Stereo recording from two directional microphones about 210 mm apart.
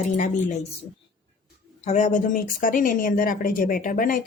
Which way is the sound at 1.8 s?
35° left (ahead or behind).